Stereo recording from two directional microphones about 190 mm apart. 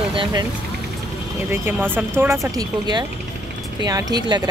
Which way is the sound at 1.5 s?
10° right (ahead or behind).